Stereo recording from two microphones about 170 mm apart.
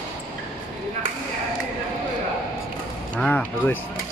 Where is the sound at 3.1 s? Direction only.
10° left (ahead or behind).